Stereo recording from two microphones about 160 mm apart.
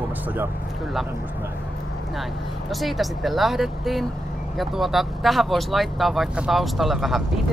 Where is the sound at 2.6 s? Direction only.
Centre (ahead or behind).